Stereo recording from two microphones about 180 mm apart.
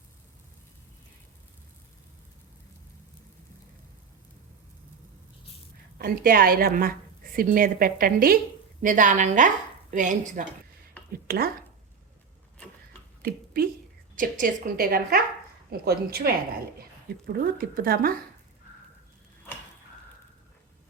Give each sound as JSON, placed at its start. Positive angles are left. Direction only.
{"t": 6.0, "sound": "a woman's voice", "side_deg": -55}
{"t": 11.3, "sound": "a woman's voice", "side_deg": -55}
{"t": 13.2, "sound": "a woman's voice", "side_deg": -55}